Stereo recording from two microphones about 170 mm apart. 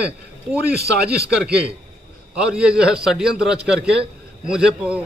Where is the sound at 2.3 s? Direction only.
5° right (ahead or behind).